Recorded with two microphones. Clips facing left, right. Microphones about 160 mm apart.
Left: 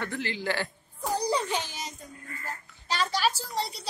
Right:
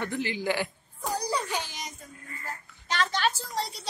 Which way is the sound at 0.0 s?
15° right (ahead or behind).